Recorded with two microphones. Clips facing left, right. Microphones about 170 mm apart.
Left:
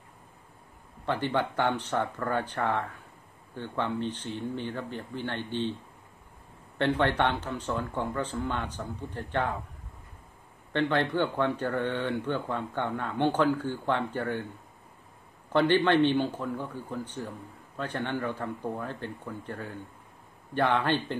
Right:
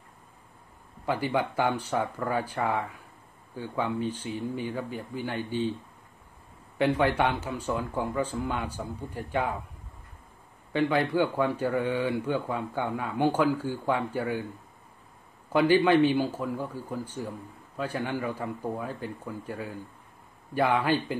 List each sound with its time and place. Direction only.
1.0 s a man's voice: 10° right (ahead or behind)
6.8 s a man's voice: 10° right (ahead or behind)
10.7 s a man's voice: 10° right (ahead or behind)
15.5 s a man's voice: 10° right (ahead or behind)